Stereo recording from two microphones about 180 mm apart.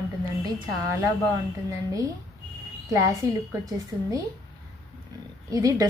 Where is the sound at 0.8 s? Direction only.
15° right (ahead or behind).